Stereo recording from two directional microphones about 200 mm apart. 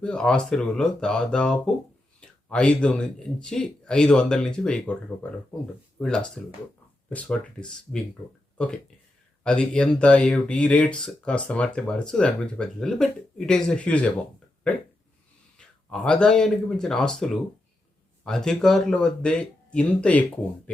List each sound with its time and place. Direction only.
0.0 s speech: 5° left (ahead or behind)
15.5 s speech: 5° left (ahead or behind)